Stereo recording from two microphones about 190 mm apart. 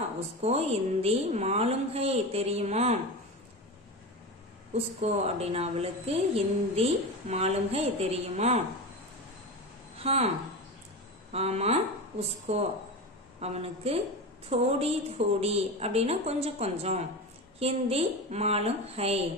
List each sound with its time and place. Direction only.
0.4 s a woman's voice: 35° right (ahead or behind)
4.7 s a woman's voice: 30° right (ahead or behind)
9.9 s speech: 30° right (ahead or behind)
11.3 s a woman's voice: 35° right (ahead or behind)